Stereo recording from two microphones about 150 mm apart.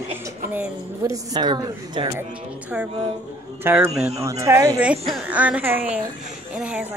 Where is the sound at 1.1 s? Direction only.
25° right (ahead or behind).